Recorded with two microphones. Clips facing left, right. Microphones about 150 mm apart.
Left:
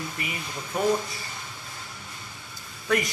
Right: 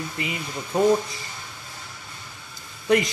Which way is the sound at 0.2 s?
25° right (ahead or behind).